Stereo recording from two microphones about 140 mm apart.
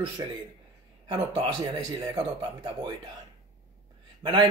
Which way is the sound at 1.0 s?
35° right (ahead or behind).